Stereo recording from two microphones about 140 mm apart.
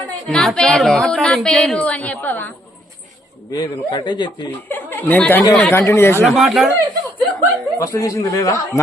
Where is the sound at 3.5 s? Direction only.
30° left (ahead or behind).